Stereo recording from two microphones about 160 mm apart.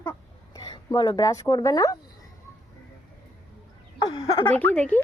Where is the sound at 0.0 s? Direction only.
20° left (ahead or behind).